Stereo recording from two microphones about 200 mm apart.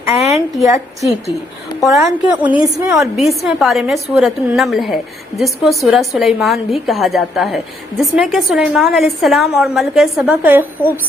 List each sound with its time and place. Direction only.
0.2 s a woman's voice: centre (ahead or behind)
0.6 s a woman's voice: 15° right (ahead or behind)